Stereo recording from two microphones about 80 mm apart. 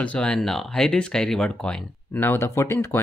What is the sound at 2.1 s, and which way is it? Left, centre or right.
Speech, left.